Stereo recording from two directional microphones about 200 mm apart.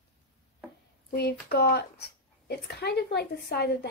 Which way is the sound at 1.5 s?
55° left (ahead or behind).